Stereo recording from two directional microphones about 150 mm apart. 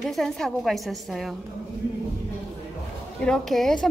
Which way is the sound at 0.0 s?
Centre (ahead or behind).